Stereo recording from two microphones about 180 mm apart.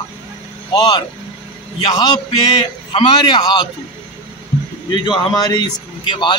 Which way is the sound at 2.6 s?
30° left (ahead or behind).